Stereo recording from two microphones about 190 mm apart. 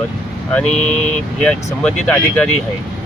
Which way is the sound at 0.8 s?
35° left (ahead or behind).